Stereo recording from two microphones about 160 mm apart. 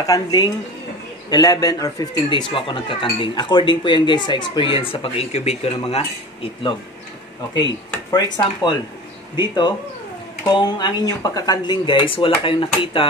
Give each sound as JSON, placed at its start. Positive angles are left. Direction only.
{"t": 0.0, "sound": "speech", "side_deg": 25}
{"t": 7.5, "sound": "speech", "side_deg": 25}